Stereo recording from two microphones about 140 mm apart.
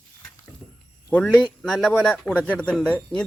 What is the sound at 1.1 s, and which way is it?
A man's voice, 5° left (ahead or behind).